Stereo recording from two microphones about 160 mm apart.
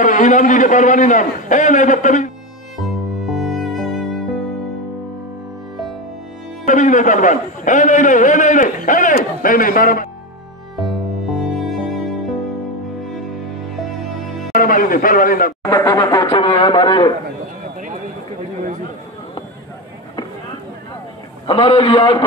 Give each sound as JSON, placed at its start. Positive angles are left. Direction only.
{"t": 0.0, "sound": "a man's voice", "side_deg": 50}
{"t": 2.8, "sound": "music", "side_deg": 0}
{"t": 6.6, "sound": "a man's voice", "side_deg": 50}
{"t": 10.8, "sound": "music", "side_deg": 0}
{"t": 14.5, "sound": "speech", "side_deg": 60}
{"t": 15.6, "sound": "speech", "side_deg": 20}
{"t": 21.5, "sound": "a man's voice", "side_deg": 35}